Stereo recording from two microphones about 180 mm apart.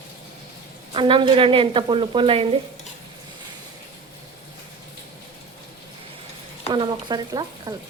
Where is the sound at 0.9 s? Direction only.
30° right (ahead or behind).